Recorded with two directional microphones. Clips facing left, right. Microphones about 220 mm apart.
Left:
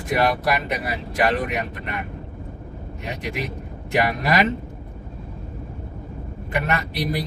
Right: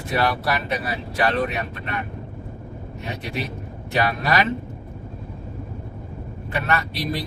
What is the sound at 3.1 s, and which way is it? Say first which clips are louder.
Speech: left 1 dB; 15° left (ahead or behind).